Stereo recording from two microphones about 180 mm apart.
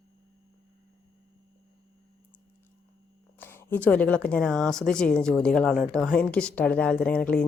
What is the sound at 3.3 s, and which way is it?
A woman's voice, 10° left (ahead or behind).